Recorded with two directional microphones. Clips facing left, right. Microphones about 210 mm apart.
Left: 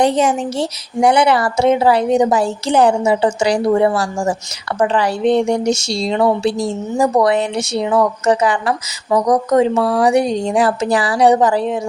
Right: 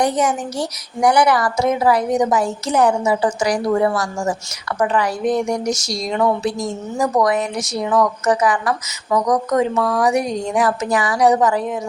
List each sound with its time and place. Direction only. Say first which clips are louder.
0.0 s a woman's voice: left 4 dB; 25° left (ahead or behind)